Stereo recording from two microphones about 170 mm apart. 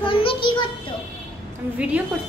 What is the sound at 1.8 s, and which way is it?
Speech, 10° right (ahead or behind).